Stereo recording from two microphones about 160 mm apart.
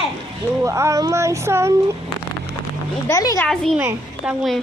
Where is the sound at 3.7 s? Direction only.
10° right (ahead or behind).